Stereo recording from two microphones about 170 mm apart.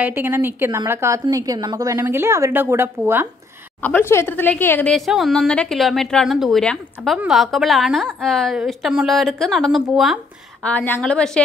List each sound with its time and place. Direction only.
0.0 s a woman's voice: 10° right (ahead or behind)
3.8 s speech: 10° left (ahead or behind)
10.6 s speech: 10° left (ahead or behind)